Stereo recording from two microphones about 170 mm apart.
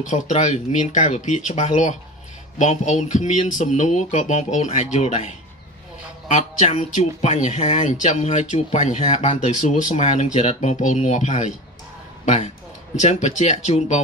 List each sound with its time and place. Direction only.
0.0 s speech: 45° left (ahead or behind)
13.0 s speech: 45° left (ahead or behind)